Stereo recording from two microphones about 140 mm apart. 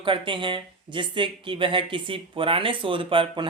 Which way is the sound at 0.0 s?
35° right (ahead or behind).